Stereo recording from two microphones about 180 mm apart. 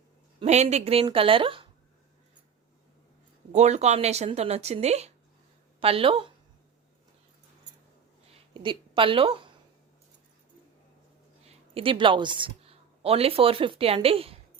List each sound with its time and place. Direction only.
0.3 s speech: 35° right (ahead or behind)
3.5 s speech: 40° right (ahead or behind)
8.3 s a sound: 30° right (ahead or behind)
11.4 s speech: 30° right (ahead or behind)